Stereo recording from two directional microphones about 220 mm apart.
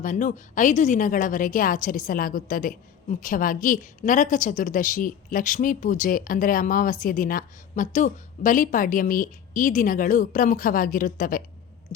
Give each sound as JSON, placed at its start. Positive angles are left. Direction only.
{"t": 0.0, "sound": "a woman's voice", "side_deg": 35}